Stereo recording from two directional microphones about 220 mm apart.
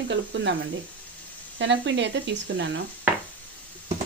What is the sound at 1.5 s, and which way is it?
Speech, 55° right (ahead or behind).